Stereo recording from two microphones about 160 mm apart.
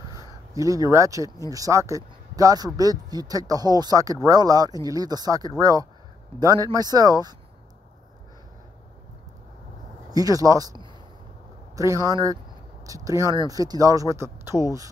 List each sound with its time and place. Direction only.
0.6 s speech: 20° right (ahead or behind)
10.1 s speech: 20° right (ahead or behind)